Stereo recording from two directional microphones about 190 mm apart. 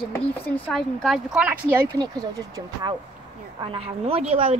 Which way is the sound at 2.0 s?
20° right (ahead or behind).